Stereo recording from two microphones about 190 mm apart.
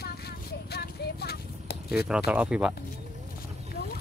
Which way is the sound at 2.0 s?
5° right (ahead or behind).